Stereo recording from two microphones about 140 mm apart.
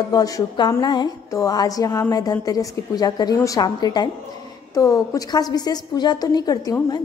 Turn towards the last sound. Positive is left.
turn(degrees=30)  # may be behind; listen again after turning